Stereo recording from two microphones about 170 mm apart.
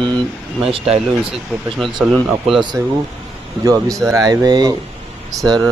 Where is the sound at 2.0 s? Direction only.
Centre (ahead or behind).